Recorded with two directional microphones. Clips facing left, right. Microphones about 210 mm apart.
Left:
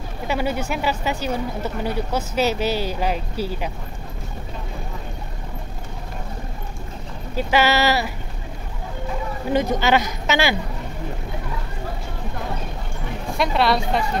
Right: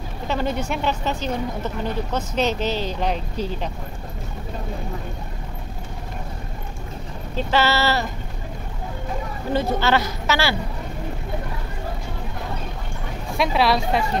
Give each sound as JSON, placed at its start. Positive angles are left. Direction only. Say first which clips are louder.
{"t": 0.3, "sound": "speech", "louder": "left 1 dB", "side_deg": 10}
{"t": 7.3, "sound": "speech", "louder": "left 2 dB", "side_deg": 15}
{"t": 9.5, "sound": "speech", "louder": "left 2 dB", "side_deg": 15}
{"t": 13.4, "sound": "a woman's voice", "louder": "even", "side_deg": 0}